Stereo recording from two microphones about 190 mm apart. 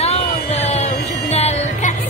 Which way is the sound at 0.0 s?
35° left (ahead or behind).